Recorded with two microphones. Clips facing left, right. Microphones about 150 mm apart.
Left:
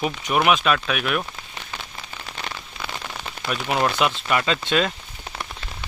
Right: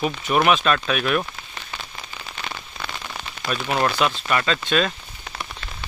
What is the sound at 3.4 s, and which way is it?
Speech, 15° left (ahead or behind).